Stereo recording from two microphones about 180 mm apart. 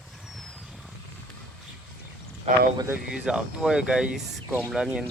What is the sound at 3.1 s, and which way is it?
Speech, 5° right (ahead or behind).